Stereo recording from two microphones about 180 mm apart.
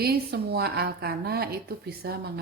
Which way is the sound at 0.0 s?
60° right (ahead or behind).